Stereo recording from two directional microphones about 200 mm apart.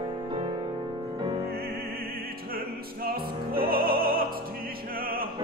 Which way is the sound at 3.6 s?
50° right (ahead or behind).